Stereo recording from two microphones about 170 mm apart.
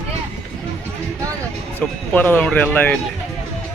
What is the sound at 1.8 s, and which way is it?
Speech, 10° left (ahead or behind).